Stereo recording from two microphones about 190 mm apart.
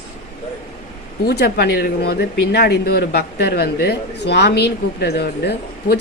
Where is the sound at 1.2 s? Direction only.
55° left (ahead or behind).